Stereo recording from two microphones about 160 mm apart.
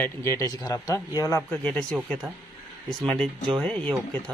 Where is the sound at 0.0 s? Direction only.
15° left (ahead or behind).